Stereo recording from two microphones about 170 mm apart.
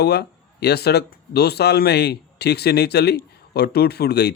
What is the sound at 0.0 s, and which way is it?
Speech, 70° left (ahead or behind).